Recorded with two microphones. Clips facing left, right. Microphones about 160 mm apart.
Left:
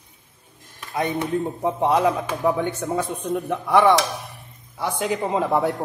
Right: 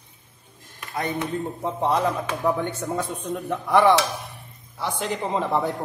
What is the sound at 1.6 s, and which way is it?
A man's voice, 10° left (ahead or behind).